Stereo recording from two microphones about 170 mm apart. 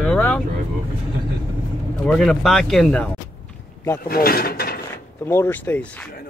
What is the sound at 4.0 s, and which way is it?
Speech, 60° left (ahead or behind).